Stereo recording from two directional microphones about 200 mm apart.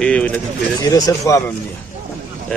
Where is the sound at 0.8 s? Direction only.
15° left (ahead or behind).